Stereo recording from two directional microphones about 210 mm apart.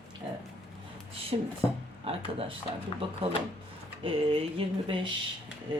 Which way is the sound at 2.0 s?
25° right (ahead or behind).